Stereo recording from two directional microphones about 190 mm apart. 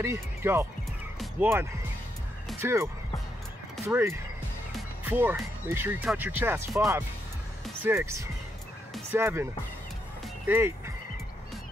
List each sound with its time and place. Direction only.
0.0 s speech: 15° right (ahead or behind)
10.2 s music: 10° right (ahead or behind)